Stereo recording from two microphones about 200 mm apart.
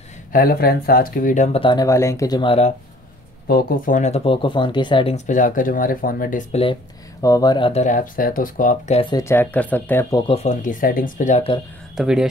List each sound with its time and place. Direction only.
0.3 s speech: 45° left (ahead or behind); by 2.7 s 25° left (ahead or behind)
3.4 s speech: 50° left (ahead or behind)
6.5 s speech: 25° left (ahead or behind)
7.2 s speech: 15° left (ahead or behind); by 9.0 s 40° left (ahead or behind)
9.1 s speech: 15° left (ahead or behind)
10.2 s speech: 30° left (ahead or behind)
12.0 s speech: 5° right (ahead or behind)